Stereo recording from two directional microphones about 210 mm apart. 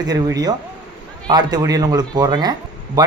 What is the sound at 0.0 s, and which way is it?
A man's voice, 20° right (ahead or behind).